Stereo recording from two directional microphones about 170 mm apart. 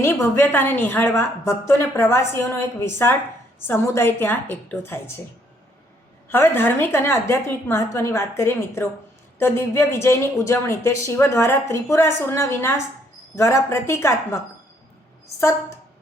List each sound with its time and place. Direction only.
0.0 s speech: 15° left (ahead or behind)
6.2 s speech: 15° left (ahead or behind)